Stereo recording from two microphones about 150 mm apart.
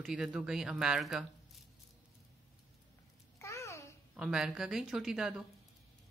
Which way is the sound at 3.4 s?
20° left (ahead or behind).